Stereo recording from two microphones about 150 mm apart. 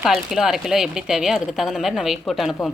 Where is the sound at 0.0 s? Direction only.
Centre (ahead or behind).